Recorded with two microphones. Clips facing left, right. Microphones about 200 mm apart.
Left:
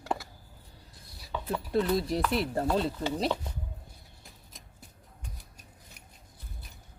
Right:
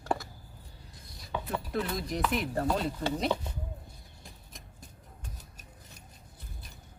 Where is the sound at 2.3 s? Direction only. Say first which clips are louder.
Left 2 dB; 30° left (ahead or behind).